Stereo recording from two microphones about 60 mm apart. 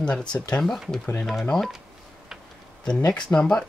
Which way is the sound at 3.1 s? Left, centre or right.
Centre.